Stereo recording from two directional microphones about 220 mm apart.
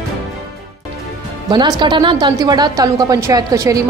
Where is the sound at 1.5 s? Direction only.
20° right (ahead or behind).